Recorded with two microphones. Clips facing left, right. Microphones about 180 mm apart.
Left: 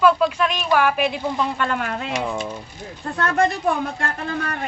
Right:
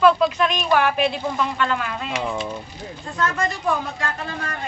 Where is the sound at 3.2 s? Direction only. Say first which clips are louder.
Left 4 dB; 60° left (ahead or behind).